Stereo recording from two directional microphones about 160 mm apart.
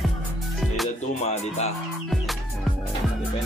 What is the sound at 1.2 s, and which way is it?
Music, 45° left (ahead or behind).